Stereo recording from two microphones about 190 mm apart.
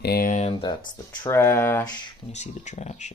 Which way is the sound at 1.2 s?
15° left (ahead or behind).